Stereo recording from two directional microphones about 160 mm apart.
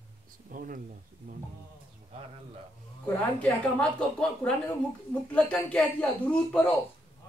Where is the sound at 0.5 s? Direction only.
60° right (ahead or behind).